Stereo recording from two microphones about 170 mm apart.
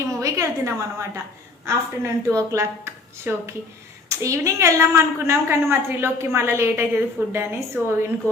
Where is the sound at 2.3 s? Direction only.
20° right (ahead or behind).